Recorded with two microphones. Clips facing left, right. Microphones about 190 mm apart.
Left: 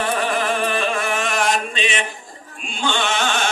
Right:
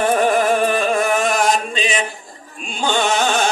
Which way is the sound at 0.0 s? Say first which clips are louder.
Right 6 dB; 45° right (ahead or behind).